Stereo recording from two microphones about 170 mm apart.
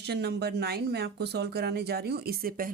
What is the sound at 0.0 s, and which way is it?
Speech, 80° right.